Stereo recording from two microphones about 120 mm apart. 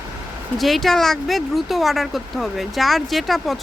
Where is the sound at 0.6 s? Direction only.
Centre (ahead or behind).